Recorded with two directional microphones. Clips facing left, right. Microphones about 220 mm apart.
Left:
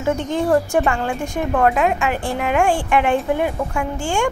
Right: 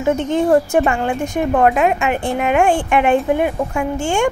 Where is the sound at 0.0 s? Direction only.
20° right (ahead or behind).